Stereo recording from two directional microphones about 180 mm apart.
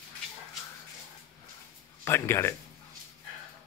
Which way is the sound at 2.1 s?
15° left (ahead or behind).